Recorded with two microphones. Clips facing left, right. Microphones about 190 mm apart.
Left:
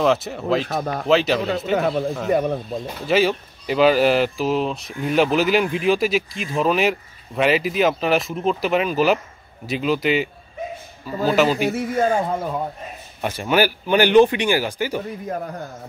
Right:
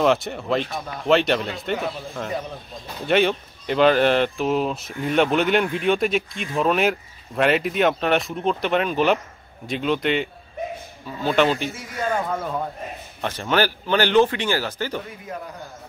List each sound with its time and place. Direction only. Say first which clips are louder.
0.0 s speech: left 1 dB; centre (ahead or behind)
0.7 s speech: left 7 dB; 55° left (ahead or behind)
1.0 s speech: even; centre (ahead or behind)
1.8 s speech: left 7 dB; 60° left (ahead or behind)
3.1 s speech: left 1 dB; 5° left (ahead or behind)
11.7 s speech: left 7 dB; 55° left (ahead or behind)
13.2 s speech: left 3 dB; 10° left (ahead or behind)
15.2 s speech: left 6 dB; 45° left (ahead or behind)